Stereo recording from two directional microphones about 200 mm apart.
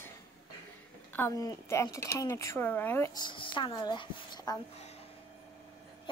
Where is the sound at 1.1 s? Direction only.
15° left (ahead or behind).